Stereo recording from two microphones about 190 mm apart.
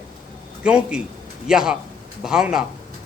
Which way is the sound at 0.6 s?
5° right (ahead or behind).